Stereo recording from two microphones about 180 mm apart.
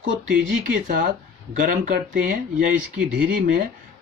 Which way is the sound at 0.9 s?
50° right (ahead or behind).